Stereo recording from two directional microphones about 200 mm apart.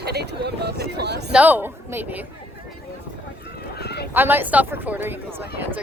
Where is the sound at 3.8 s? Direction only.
55° left (ahead or behind).